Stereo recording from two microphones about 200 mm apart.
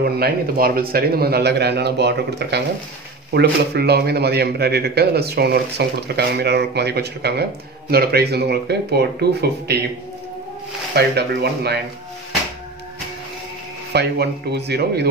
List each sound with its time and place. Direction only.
0.0 s a man's voice: 50° right (ahead or behind)
11.0 s a man's voice: 55° right (ahead or behind)
13.9 s a man's voice: 55° right (ahead or behind)